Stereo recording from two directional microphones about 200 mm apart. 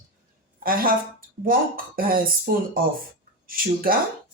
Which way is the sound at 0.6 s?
45° right (ahead or behind).